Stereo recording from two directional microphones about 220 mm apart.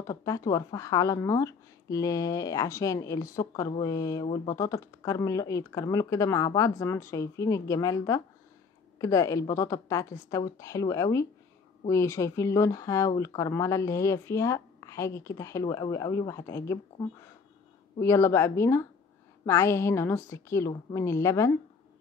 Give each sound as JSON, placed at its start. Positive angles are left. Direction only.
{"t": 0.0, "sound": "speech", "side_deg": 15}
{"t": 18.0, "sound": "speech", "side_deg": 15}